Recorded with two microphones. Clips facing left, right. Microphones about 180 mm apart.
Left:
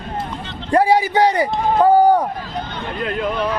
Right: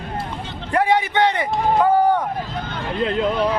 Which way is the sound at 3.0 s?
25° right (ahead or behind).